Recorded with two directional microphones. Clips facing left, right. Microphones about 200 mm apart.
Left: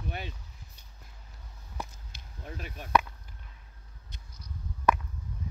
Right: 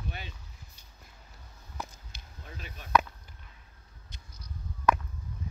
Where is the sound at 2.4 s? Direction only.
50° left (ahead or behind).